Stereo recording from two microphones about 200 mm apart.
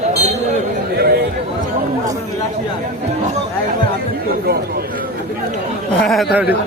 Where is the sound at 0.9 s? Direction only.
50° right (ahead or behind).